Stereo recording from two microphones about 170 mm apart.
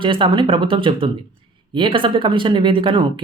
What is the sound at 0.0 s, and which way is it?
Speech, 30° right (ahead or behind).